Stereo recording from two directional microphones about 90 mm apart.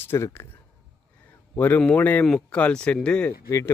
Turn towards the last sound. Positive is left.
turn(degrees=30)  # may be behind; listen again after turning